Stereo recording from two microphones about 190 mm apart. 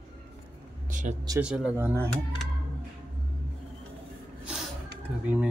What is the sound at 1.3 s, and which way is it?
Speech, 5° right (ahead or behind).